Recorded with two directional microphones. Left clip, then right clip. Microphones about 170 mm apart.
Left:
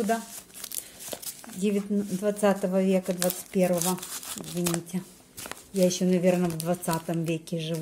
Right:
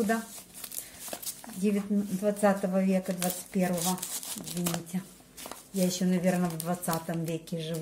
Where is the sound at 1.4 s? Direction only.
20° left (ahead or behind).